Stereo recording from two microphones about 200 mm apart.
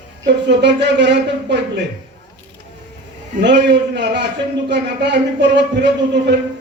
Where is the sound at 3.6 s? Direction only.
60° right (ahead or behind).